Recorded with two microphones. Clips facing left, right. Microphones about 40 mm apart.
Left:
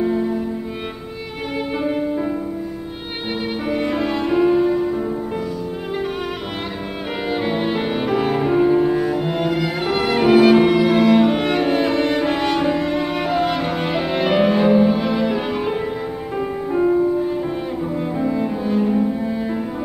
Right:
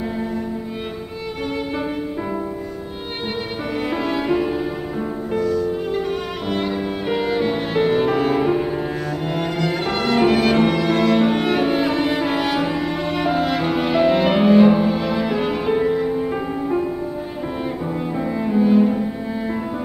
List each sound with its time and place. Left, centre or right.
4.1 s music: centre
7.2 s music: centre
17.8 s cello: centre